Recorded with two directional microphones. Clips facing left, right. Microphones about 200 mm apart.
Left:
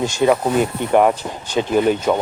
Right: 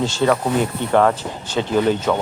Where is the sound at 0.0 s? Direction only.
15° left (ahead or behind).